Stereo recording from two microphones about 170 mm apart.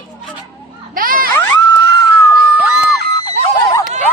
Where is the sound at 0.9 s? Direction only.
55° right (ahead or behind).